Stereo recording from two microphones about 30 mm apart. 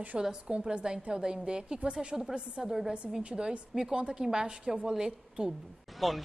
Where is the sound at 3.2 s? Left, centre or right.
Right.